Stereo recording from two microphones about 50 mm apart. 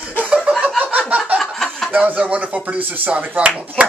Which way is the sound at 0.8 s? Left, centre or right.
Right.